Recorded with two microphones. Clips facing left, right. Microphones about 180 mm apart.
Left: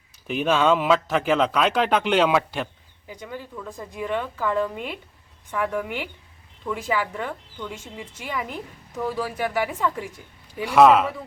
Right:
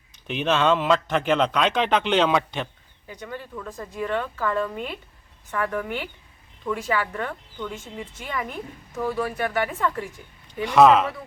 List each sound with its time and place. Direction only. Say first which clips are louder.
0.3 s speech: left 1 dB; 5° left (ahead or behind)